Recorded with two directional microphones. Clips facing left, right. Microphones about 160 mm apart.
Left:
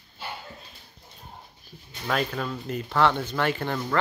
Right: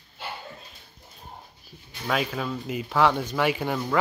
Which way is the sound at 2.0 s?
5° right (ahead or behind).